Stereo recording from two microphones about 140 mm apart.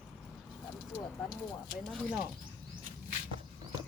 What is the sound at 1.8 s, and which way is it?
Speech, 5° left (ahead or behind).